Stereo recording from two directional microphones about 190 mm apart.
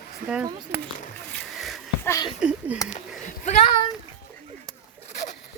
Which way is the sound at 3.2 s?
40° left (ahead or behind).